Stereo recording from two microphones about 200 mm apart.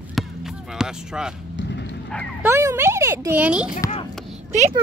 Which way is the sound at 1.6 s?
60° left (ahead or behind).